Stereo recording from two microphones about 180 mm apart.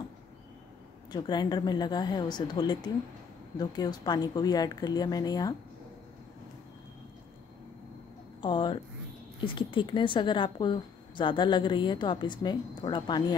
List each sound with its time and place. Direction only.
1.1 s speech: 25° left (ahead or behind)
8.4 s a sound: 25° left (ahead or behind)
9.4 s speech: 30° left (ahead or behind)